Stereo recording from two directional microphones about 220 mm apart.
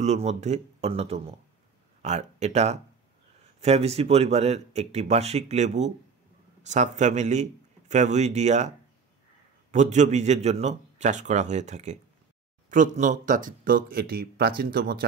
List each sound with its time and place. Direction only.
0.0 s a man's voice: 30° right (ahead or behind)